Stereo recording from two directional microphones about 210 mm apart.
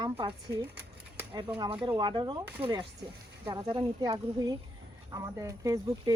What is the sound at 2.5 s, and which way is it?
Speech, 10° right (ahead or behind).